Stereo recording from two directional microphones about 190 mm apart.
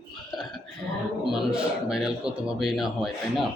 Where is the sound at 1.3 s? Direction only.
Centre (ahead or behind).